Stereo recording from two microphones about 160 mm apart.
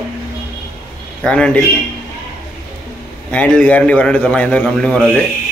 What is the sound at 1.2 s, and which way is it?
Speech, 5° left (ahead or behind).